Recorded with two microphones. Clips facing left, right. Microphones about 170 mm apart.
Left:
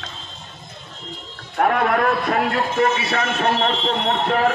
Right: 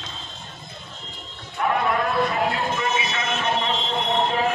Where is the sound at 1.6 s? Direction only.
60° left (ahead or behind).